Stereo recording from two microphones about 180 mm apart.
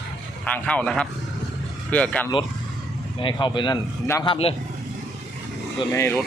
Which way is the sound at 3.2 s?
25° left (ahead or behind).